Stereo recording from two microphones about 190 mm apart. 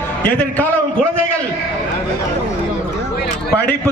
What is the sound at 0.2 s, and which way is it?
Speech, 10° left (ahead or behind).